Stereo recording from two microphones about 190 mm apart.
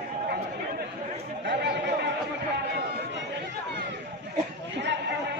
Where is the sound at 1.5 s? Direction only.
65° right (ahead or behind).